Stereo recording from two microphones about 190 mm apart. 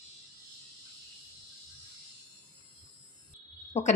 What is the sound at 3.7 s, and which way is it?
Speech, 35° left (ahead or behind).